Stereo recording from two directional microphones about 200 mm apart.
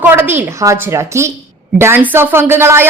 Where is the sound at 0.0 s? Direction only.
10° right (ahead or behind).